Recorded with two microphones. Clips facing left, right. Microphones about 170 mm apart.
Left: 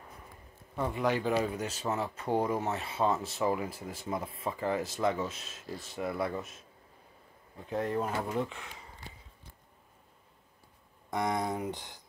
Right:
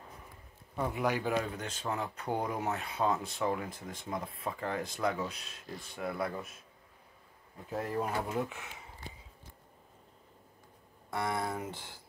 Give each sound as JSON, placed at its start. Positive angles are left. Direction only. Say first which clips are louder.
{"t": 0.7, "sound": "a man's voice", "louder": "left 2 dB", "side_deg": -10}
{"t": 1.3, "sound": "speech", "louder": "left 3 dB", "side_deg": 5}
{"t": 7.7, "sound": "speech", "louder": "left 2 dB", "side_deg": -5}
{"t": 11.1, "sound": "speech", "louder": "left 3 dB", "side_deg": 20}